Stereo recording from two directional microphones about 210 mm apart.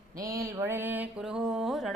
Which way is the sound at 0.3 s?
15° right (ahead or behind).